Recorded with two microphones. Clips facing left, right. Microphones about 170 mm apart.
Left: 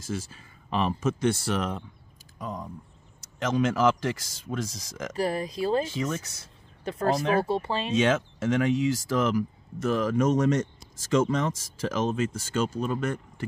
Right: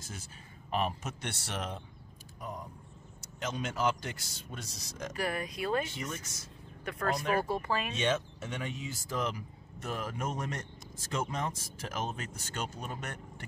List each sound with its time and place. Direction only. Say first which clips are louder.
0.0 s speech: left 13 dB; 90° left
5.1 s speech: left 7 dB; 35° left (ahead or behind)
5.9 s speech: left 10 dB; 90° left
6.8 s speech: left 8 dB; 25° left (ahead or behind)
7.9 s speech: left 8 dB; 90° left